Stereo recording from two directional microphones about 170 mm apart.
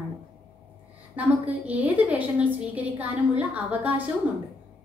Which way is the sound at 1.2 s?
10° right (ahead or behind).